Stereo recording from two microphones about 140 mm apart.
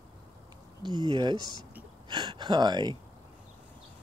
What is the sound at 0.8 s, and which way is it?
Speech, 30° right (ahead or behind).